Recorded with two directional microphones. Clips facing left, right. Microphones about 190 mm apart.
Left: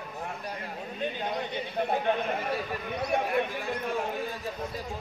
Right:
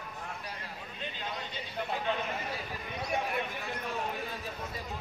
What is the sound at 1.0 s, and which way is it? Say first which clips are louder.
Horse: left 8 dB; 50° left (ahead or behind).